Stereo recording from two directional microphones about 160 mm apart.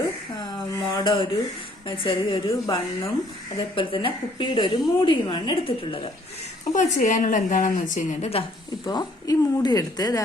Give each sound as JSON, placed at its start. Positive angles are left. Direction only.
{"t": 0.0, "sound": "a sound", "side_deg": 25}
{"t": 2.0, "sound": "a woman's voice", "side_deg": 30}
{"t": 6.7, "sound": "a woman's voice", "side_deg": 50}
{"t": 8.3, "sound": "a woman's voice", "side_deg": 30}